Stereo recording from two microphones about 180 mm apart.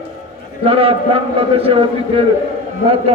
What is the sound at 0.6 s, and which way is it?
A man's voice, 30° right (ahead or behind).